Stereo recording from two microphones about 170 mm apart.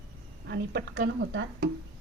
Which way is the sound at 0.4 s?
85° right.